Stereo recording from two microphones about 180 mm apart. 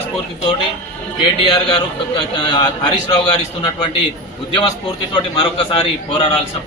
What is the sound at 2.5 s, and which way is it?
Speech, 25° left (ahead or behind).